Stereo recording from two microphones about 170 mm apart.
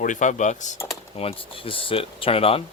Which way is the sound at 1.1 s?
35° left (ahead or behind).